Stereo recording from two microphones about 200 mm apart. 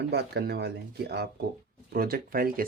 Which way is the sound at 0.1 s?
55° right (ahead or behind).